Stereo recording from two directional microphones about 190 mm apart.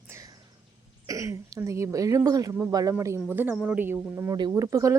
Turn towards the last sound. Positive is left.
turn(degrees=-15)  # may be behind; listen again after turning